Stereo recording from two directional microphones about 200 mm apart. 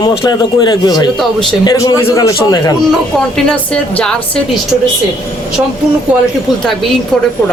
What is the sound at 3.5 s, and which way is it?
Speech, 5° left (ahead or behind).